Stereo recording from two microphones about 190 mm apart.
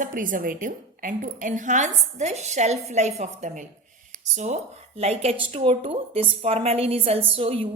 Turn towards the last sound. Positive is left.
turn(degrees=-30)  # may be behind; listen again after turning